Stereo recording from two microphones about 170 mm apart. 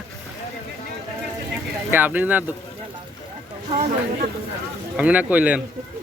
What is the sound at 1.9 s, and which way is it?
Speech, 10° right (ahead or behind).